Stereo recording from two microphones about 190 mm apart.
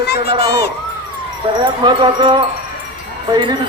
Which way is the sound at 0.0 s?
60° left (ahead or behind).